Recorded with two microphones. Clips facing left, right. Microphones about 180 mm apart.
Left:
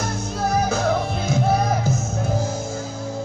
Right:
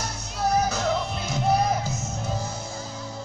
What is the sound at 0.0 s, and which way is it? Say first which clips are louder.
Music: left 4 dB; 50° left (ahead or behind).